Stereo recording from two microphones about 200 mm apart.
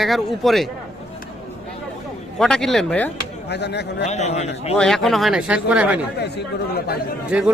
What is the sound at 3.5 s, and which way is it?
Speech, 55° left (ahead or behind).